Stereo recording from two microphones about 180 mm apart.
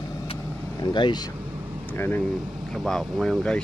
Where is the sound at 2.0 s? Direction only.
10° left (ahead or behind).